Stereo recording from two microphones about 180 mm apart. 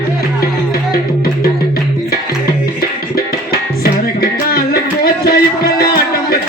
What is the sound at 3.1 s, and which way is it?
Music, 60° left (ahead or behind).